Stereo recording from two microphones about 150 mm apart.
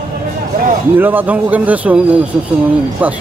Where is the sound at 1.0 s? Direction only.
10° right (ahead or behind).